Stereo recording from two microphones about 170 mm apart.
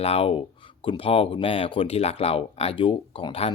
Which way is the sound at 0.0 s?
35° left (ahead or behind).